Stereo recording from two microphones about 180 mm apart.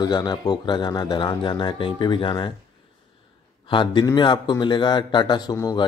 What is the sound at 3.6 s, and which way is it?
Speech, 25° left (ahead or behind).